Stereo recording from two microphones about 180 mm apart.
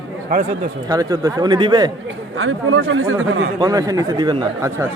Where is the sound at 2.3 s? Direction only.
90° right.